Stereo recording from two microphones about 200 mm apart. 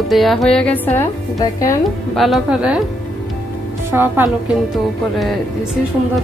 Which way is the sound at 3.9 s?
10° right (ahead or behind).